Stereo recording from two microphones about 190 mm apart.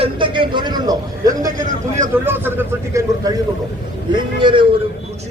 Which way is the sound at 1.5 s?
40° right (ahead or behind).